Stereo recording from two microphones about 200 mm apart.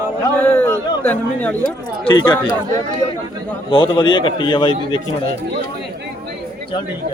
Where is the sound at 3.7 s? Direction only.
25° left (ahead or behind).